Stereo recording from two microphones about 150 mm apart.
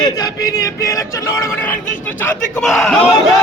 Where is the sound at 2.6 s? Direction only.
5° left (ahead or behind).